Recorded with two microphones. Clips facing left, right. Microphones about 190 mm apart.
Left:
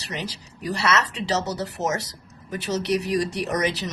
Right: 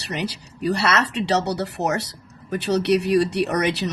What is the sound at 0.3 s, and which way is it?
Speech, 65° right (ahead or behind).